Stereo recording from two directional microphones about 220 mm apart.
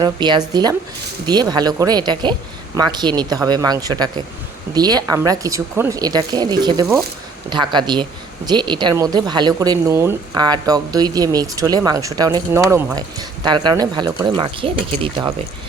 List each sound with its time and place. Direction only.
0.0 s speech: 20° right (ahead or behind)